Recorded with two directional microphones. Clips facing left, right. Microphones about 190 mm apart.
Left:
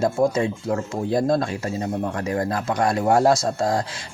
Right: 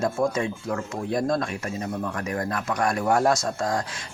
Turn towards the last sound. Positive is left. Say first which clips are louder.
# left 4 dB
turn(degrees=30)  # may be behind; listen again after turning